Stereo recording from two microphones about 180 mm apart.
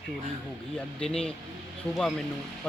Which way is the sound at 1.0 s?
5° left (ahead or behind).